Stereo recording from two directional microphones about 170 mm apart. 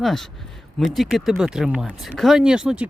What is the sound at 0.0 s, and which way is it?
Speech, centre (ahead or behind).